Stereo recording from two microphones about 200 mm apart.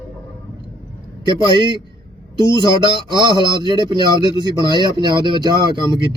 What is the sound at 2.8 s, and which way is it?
Speech, 25° right (ahead or behind).